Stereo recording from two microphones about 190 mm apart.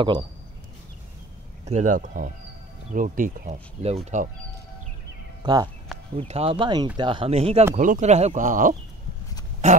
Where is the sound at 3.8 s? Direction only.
35° right (ahead or behind).